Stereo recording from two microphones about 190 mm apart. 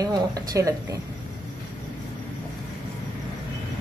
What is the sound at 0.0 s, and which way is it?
Speech, 20° right (ahead or behind).